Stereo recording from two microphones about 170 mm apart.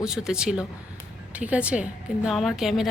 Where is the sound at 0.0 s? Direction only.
5° right (ahead or behind).